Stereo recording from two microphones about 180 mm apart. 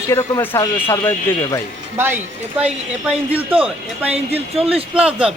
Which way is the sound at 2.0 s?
10° right (ahead or behind).